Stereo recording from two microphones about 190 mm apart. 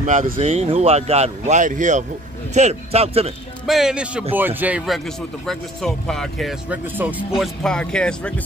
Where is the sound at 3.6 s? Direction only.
Centre (ahead or behind).